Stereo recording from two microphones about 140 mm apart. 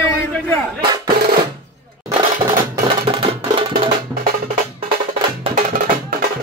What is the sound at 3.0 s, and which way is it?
Music, 35° right (ahead or behind).